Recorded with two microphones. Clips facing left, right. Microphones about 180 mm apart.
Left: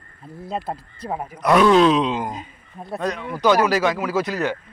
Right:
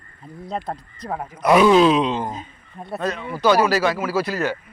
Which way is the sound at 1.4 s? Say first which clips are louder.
Right 1 dB; 5° right (ahead or behind).